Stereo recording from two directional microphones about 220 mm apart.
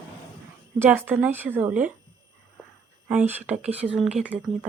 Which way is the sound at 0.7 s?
10° right (ahead or behind).